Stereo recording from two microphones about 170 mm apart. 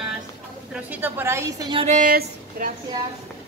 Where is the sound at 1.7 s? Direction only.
35° right (ahead or behind).